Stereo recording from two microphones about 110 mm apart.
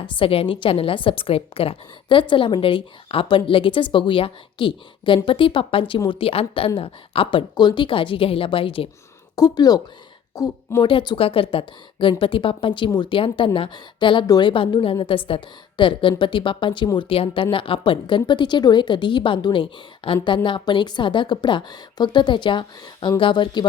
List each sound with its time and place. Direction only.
0.0 s a woman's voice: 55° left (ahead or behind)
9.3 s speech: 35° left (ahead or behind)
10.8 s a woman's voice: 45° left (ahead or behind)
14.5 s a woman's voice: 50° left (ahead or behind)